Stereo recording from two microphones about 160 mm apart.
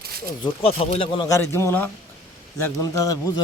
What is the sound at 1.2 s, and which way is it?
A man's voice, 15° left (ahead or behind).